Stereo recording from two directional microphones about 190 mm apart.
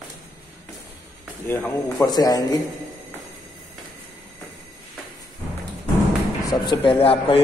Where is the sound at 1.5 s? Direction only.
10° left (ahead or behind).